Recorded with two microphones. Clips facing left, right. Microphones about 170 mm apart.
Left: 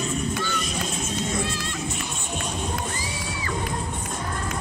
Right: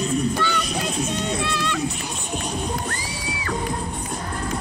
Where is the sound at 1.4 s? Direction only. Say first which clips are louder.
Right 3 dB; 70° right (ahead or behind).